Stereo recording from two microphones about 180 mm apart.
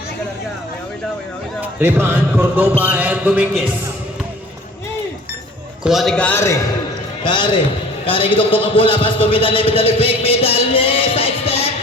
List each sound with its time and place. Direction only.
1.6 s a man's voice: 10° right (ahead or behind)
5.8 s a man's voice: centre (ahead or behind)
7.3 s a man's voice: 25° left (ahead or behind)